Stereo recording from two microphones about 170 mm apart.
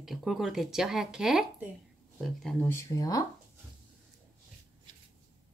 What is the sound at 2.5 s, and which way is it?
Speech, 15° left (ahead or behind).